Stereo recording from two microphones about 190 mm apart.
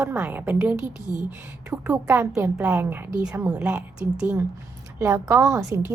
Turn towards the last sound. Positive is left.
turn(degrees=-15)  # may be behind; listen again after turning